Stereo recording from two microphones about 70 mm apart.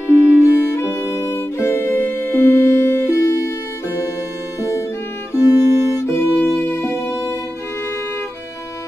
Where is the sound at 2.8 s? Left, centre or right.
Left.